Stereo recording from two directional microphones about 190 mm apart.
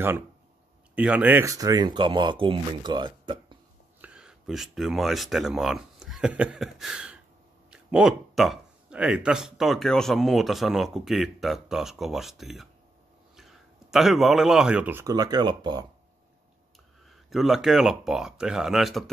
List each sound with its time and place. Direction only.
0.9 s speech: 5° right (ahead or behind); by 3.5 s 25° right (ahead or behind)
4.0 s speech: 5° right (ahead or behind); by 15.9 s 20° right (ahead or behind)
17.1 s speech: centre (ahead or behind)